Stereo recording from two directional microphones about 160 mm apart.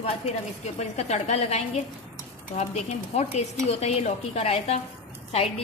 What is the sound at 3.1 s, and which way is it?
Speech, 40° left (ahead or behind).